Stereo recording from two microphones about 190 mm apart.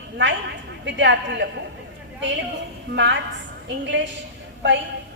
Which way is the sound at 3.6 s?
70° right (ahead or behind).